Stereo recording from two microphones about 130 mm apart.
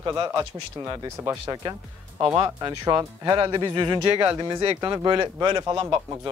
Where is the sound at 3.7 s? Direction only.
35° right (ahead or behind).